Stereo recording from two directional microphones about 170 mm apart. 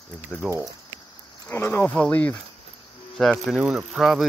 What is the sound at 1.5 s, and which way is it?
Speech, 15° left (ahead or behind).